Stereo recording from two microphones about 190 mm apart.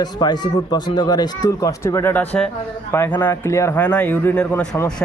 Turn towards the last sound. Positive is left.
turn(degrees=10)  # may be behind; listen again after turning